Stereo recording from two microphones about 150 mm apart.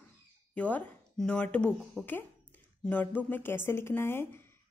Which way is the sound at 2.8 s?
10° left (ahead or behind).